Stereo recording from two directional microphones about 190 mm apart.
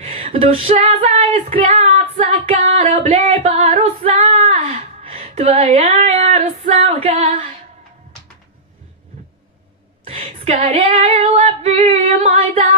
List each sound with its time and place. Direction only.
0.0 s female singing: 35° right (ahead or behind)
10.0 s female singing: 35° right (ahead or behind)